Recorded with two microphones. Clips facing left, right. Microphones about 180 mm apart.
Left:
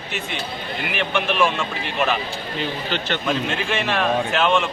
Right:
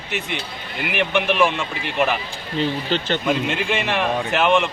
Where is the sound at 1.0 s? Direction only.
15° right (ahead or behind).